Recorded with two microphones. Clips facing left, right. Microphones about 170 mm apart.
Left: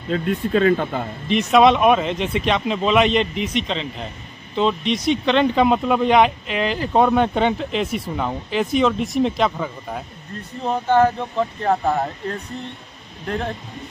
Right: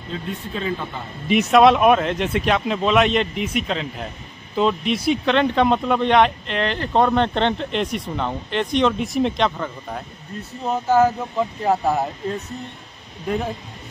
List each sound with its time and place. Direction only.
0.1 s speech: 70° left (ahead or behind)
1.3 s speech: centre (ahead or behind)